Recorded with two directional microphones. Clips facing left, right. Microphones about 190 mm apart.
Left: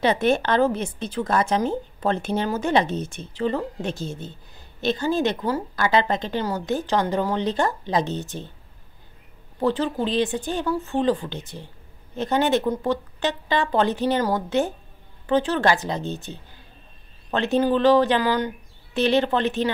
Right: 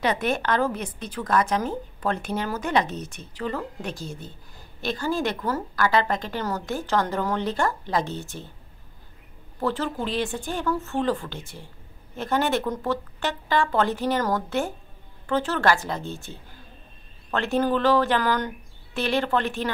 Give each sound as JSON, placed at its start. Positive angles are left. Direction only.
{"t": 0.0, "sound": "a woman's voice", "side_deg": 30}
{"t": 9.6, "sound": "a woman's voice", "side_deg": 15}
{"t": 18.9, "sound": "a woman's voice", "side_deg": 20}